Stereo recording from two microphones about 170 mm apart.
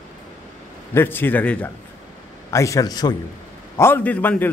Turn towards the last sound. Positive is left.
turn(degrees=10)  # may be behind; listen again after turning